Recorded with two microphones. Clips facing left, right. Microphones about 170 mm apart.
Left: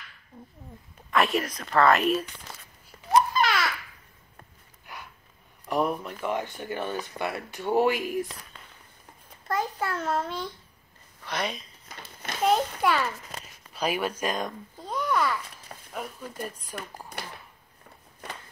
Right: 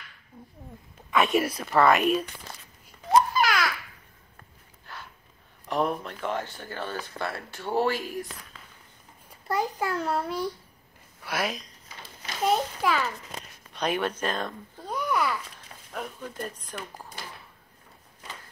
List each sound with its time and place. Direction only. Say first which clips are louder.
1.1 s speech: right 1 dB; centre (ahead or behind)
3.3 s babbling: even; centre (ahead or behind)
4.9 s gasp: even; 15° left (ahead or behind)
5.7 s speech: left 1 dB; 10° left (ahead or behind)
9.5 s a child's voice: right 1 dB; 15° right (ahead or behind); by 14.9 s 10° left (ahead or behind)
14.9 s a sound: left 1 dB; 10° right (ahead or behind)
15.9 s speech: right 1 dB; 5° left (ahead or behind)